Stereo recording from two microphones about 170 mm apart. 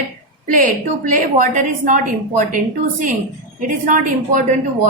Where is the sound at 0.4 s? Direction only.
50° right (ahead or behind).